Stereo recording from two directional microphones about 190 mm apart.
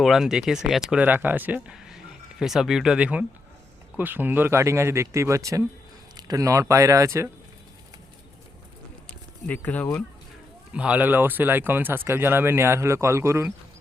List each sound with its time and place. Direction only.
0.0 s speech: centre (ahead or behind)
9.0 s a sound: 10° left (ahead or behind)
10.7 s speech: 5° right (ahead or behind)